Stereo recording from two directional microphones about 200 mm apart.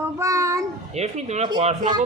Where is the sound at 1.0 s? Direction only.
35° right (ahead or behind).